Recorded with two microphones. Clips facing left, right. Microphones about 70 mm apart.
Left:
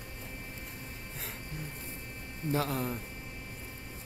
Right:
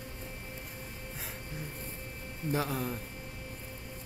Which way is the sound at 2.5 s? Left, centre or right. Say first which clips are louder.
Left 1 dB; centre.